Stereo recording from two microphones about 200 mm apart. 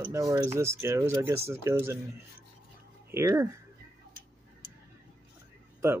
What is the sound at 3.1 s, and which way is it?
Speech, 15° right (ahead or behind).